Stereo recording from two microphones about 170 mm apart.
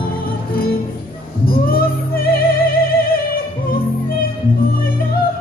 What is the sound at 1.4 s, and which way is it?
Music, 60° left (ahead or behind).